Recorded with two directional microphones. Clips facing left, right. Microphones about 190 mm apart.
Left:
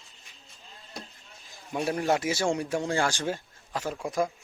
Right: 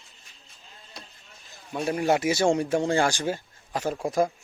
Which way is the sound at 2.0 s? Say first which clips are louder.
Right 5 dB; 15° right (ahead or behind).